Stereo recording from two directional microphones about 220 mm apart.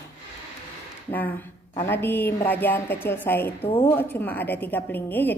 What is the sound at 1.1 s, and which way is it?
A woman's voice, 10° left (ahead or behind).